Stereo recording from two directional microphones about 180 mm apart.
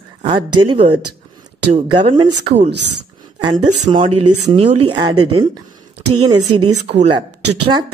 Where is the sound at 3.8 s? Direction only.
30° right (ahead or behind).